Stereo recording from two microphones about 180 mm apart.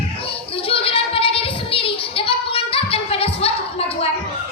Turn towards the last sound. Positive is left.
turn(degrees=35)  # may be behind; listen again after turning